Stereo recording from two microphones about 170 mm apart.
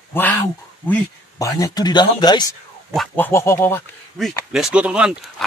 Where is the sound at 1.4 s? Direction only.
20° left (ahead or behind).